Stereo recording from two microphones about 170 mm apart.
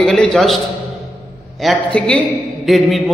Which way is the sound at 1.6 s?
5° left (ahead or behind).